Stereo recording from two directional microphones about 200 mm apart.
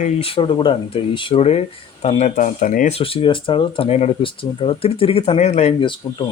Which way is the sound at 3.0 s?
30° left (ahead or behind).